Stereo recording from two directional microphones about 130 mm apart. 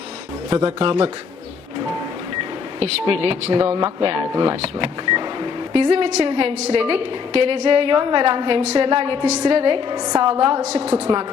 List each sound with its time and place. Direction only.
0.8 s a woman's voice: 50° right (ahead or behind)
2.8 s a woman's voice: 50° right (ahead or behind)
3.6 s speech: 30° right (ahead or behind)
4.0 s speech: 40° right (ahead or behind)
5.9 s a woman's voice: 55° right (ahead or behind); by 10.3 s 40° right (ahead or behind)
10.6 s a woman's voice: 65° right (ahead or behind)
10.8 s a woman's voice: 15° right (ahead or behind)